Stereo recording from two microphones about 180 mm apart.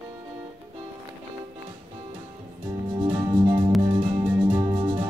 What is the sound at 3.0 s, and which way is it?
Music, 25° right (ahead or behind).